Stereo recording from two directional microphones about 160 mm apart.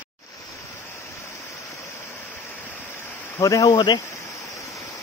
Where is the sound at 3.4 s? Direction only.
20° left (ahead or behind).